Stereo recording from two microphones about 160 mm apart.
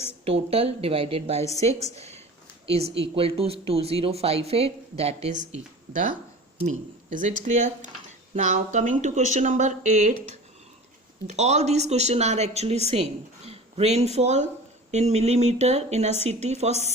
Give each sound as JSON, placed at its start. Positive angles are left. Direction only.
{"t": 0.3, "sound": "speech", "side_deg": -40}
{"t": 5.5, "sound": "speech", "side_deg": -55}
{"t": 11.3, "sound": "speech", "side_deg": -45}